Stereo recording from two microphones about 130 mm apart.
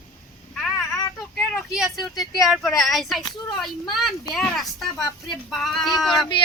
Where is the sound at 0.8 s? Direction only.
20° left (ahead or behind).